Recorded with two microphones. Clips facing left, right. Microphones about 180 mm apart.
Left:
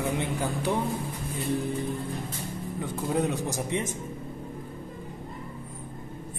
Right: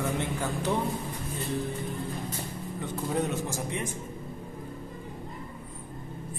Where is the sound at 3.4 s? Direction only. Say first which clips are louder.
Left 3 dB; 20° left (ahead or behind).